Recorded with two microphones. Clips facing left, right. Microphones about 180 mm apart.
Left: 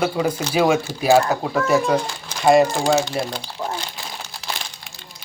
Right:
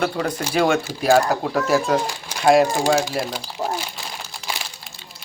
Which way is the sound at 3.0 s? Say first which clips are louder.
Even; 5° right (ahead or behind).